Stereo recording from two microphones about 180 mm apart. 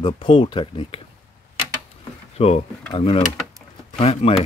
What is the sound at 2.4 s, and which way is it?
Speech, 35° left (ahead or behind).